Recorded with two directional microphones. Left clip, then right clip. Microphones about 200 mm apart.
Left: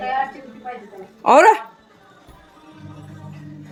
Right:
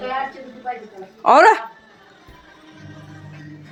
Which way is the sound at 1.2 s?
15° left (ahead or behind).